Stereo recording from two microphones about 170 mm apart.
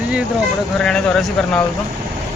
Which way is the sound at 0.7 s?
5° left (ahead or behind).